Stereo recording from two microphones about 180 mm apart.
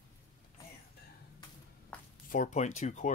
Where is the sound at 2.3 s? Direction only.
45° left (ahead or behind).